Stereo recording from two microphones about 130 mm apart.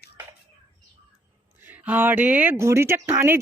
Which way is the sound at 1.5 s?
15° right (ahead or behind).